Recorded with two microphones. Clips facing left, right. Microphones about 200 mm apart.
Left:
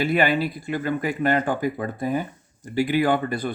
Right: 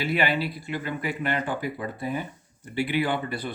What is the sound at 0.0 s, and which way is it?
Speech, 50° left (ahead or behind).